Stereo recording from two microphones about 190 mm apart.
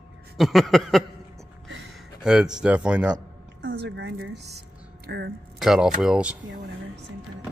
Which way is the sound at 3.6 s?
60° right (ahead or behind).